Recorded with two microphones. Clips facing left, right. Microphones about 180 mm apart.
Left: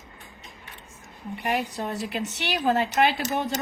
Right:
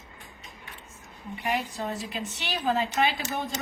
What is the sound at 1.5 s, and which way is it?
A woman's voice, 75° left (ahead or behind).